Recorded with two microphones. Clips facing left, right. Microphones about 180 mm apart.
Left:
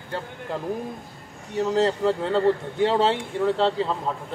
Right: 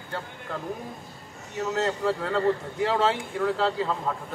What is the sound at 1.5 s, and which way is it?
Speech, 30° left (ahead or behind).